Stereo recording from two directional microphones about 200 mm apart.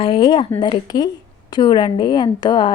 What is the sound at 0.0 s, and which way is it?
Speech, 25° left (ahead or behind).